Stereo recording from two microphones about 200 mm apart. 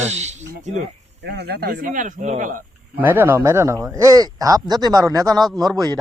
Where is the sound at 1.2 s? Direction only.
55° right (ahead or behind).